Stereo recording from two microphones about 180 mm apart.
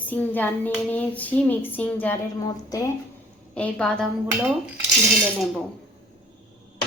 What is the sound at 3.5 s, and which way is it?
Speech, 5° left (ahead or behind).